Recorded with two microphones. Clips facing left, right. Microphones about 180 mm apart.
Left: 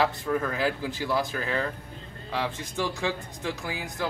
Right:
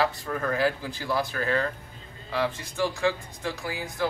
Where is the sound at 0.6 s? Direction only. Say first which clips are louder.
Right 1 dB; 15° left (ahead or behind).